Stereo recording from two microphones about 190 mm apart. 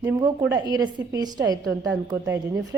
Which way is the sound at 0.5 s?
20° right (ahead or behind).